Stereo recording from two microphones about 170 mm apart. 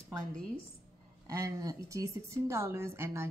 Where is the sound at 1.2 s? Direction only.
20° right (ahead or behind).